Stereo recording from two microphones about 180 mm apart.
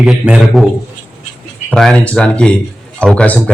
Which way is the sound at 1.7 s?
5° left (ahead or behind).